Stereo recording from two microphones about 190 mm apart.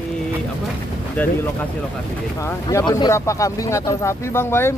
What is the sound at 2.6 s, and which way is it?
Speech, 20° left (ahead or behind).